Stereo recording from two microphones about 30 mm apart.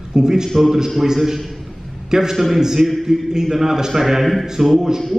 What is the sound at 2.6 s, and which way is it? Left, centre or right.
A man's voice, centre.